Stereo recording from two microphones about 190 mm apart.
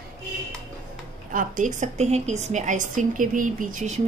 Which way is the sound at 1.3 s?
45° right (ahead or behind).